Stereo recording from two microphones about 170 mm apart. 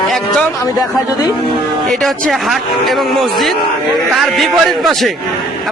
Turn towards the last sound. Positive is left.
turn(degrees=0)  # may be behind; listen again after turning